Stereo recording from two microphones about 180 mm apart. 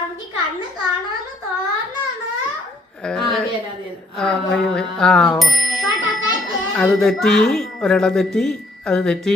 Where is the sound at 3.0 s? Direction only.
5° left (ahead or behind).